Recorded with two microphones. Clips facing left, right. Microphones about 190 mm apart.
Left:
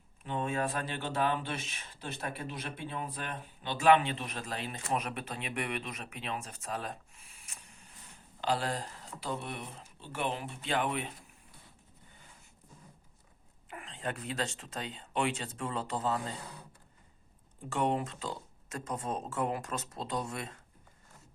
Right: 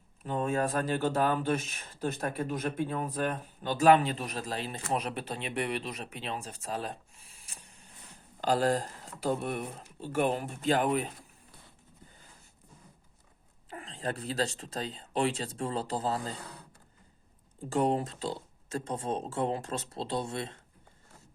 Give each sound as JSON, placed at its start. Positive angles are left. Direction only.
{"t": 0.3, "sound": "speech", "side_deg": -40}
{"t": 8.4, "sound": "speech", "side_deg": -45}
{"t": 13.7, "sound": "speech", "side_deg": -35}
{"t": 17.7, "sound": "speech", "side_deg": -35}